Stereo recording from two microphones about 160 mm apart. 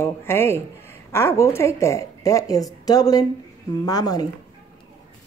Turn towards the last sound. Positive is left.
turn(degrees=25)  # may be behind; listen again after turning